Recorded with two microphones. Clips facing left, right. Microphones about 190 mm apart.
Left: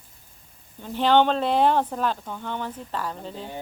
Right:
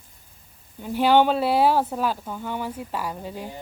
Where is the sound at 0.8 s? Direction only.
10° right (ahead or behind).